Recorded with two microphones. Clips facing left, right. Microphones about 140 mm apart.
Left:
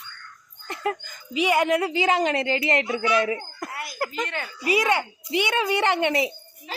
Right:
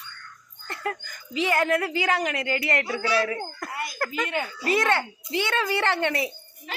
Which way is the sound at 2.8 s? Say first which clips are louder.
Left 2 dB; 35° right (ahead or behind).